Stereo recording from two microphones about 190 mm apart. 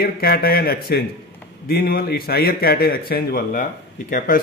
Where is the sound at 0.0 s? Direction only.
50° left (ahead or behind).